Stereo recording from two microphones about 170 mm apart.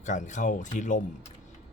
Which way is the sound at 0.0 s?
45° left (ahead or behind).